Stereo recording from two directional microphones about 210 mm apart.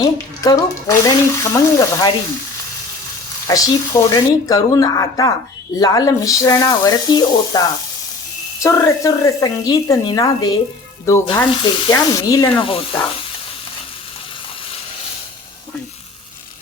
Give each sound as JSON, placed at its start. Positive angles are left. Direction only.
{"t": 0.0, "sound": "speech", "side_deg": 15}
{"t": 3.4, "sound": "speech", "side_deg": 15}